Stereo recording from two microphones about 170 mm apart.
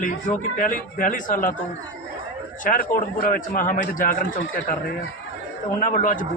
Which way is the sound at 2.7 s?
55° left (ahead or behind).